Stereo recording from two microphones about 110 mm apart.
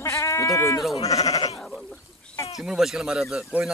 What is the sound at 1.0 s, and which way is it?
Speech, 30° left (ahead or behind).